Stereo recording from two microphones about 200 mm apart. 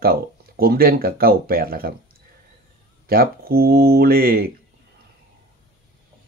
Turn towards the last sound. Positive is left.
turn(degrees=-50)  # may be behind; listen again after turning